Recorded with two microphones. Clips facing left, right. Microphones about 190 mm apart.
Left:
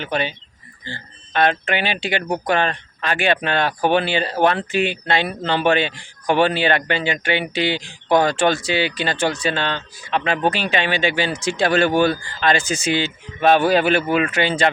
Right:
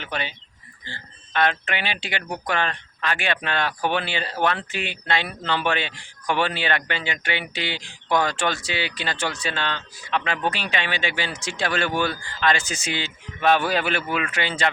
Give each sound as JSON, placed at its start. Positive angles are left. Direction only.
{"t": 0.0, "sound": "speech", "side_deg": 30}